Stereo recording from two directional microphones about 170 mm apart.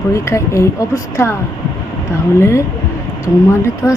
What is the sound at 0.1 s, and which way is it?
Speech, 15° left (ahead or behind).